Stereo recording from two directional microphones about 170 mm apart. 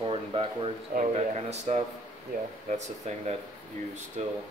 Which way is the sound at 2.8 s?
40° right (ahead or behind).